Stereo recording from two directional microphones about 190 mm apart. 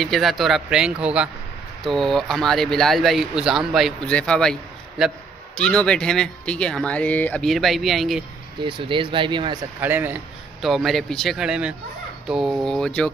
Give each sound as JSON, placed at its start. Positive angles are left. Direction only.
{"t": 0.0, "sound": "speech", "side_deg": 0}
{"t": 8.5, "sound": "speech", "side_deg": -25}
{"t": 9.8, "sound": "speech", "side_deg": -10}
{"t": 10.7, "sound": "speech", "side_deg": 0}